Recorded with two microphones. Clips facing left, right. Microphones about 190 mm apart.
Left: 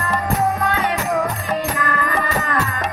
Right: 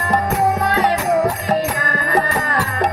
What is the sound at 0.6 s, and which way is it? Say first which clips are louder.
Music: right 3 dB; 35° right (ahead or behind).